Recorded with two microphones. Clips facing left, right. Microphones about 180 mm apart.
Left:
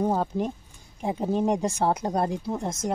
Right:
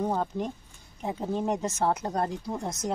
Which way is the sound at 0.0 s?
10° left (ahead or behind).